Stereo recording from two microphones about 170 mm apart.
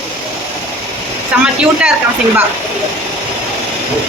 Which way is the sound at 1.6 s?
5° right (ahead or behind).